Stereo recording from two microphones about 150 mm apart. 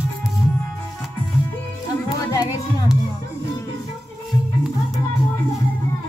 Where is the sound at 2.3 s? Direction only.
25° left (ahead or behind).